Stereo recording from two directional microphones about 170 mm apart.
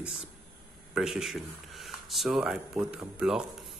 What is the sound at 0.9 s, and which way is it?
Speech, 5° right (ahead or behind).